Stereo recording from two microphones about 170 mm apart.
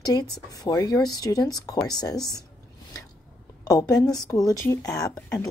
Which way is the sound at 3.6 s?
20° left (ahead or behind).